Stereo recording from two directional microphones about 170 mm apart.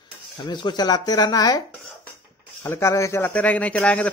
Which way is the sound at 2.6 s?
15° left (ahead or behind).